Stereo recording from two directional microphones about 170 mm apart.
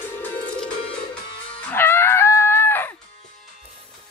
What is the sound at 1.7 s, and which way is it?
Music, 15° left (ahead or behind).